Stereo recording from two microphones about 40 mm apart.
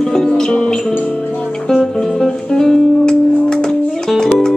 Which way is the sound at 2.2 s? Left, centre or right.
Centre.